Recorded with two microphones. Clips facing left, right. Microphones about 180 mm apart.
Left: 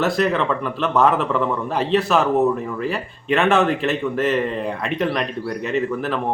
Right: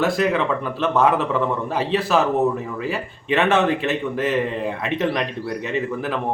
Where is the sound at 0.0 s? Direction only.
15° right (ahead or behind).